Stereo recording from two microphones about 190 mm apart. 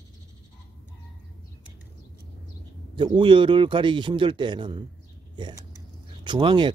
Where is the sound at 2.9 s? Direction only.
25° right (ahead or behind).